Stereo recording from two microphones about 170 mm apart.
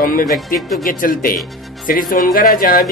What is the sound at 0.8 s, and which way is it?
A man's voice, 60° left (ahead or behind).